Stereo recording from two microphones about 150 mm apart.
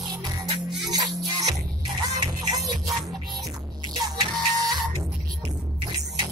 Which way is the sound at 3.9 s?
25° right (ahead or behind).